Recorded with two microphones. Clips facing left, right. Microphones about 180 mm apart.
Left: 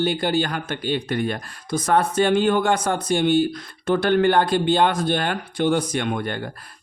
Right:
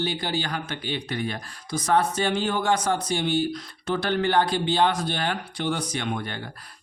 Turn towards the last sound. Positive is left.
turn(degrees=50)  # may be behind; listen again after turning